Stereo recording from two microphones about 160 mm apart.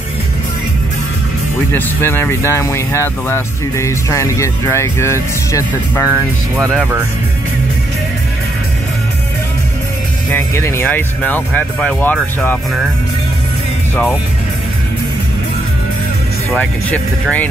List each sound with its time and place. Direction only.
1.7 s speech: 15° left (ahead or behind)
6.7 s speech: 10° right (ahead or behind)
10.3 s speech: 15° left (ahead or behind)
16.5 s speech: 10° left (ahead or behind)